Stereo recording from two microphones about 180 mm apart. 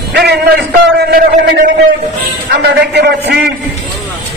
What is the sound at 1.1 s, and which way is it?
Speech, 50° right (ahead or behind).